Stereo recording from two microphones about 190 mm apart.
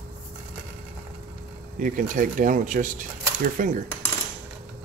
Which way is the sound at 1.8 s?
45° right (ahead or behind).